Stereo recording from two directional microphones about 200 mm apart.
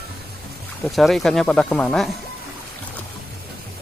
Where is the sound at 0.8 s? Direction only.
Centre (ahead or behind).